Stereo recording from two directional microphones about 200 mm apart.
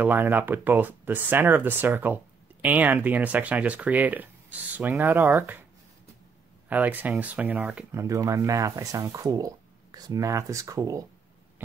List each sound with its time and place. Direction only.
0.0 s speech: 10° right (ahead or behind)
6.7 s speech: 10° right (ahead or behind)